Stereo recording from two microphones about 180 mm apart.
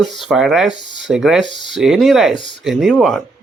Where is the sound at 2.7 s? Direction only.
Centre (ahead or behind).